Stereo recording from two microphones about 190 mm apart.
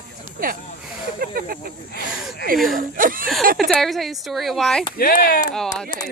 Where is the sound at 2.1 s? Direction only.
5° right (ahead or behind).